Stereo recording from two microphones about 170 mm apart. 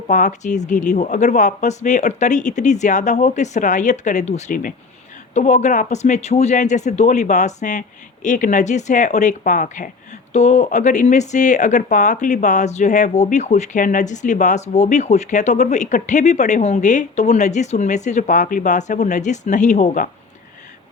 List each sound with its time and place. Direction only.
0.1 s speech: 45° left (ahead or behind)